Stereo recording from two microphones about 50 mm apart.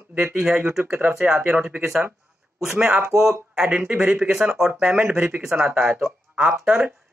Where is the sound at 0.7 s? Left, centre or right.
Centre.